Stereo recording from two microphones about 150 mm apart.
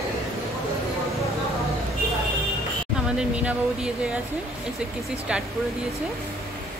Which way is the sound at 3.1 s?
5° right (ahead or behind).